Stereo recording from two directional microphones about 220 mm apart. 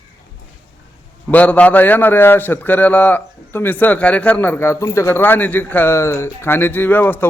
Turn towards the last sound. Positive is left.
turn(degrees=10)  # may be behind; listen again after turning